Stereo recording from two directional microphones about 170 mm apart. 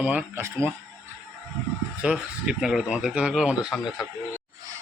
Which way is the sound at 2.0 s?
5° right (ahead or behind).